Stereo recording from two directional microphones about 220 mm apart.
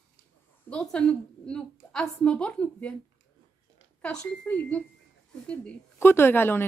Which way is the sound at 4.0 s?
5° left (ahead or behind).